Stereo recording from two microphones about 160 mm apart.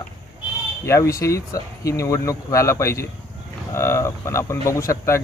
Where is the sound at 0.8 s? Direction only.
20° left (ahead or behind).